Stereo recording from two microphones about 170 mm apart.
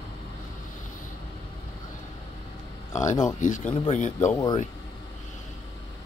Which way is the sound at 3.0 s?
45° left (ahead or behind).